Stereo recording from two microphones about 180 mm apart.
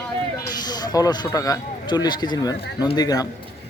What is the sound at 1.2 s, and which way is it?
Speech, 20° left (ahead or behind).